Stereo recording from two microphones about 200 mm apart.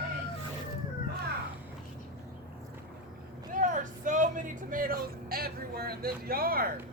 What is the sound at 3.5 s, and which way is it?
Vehicle, 40° right (ahead or behind).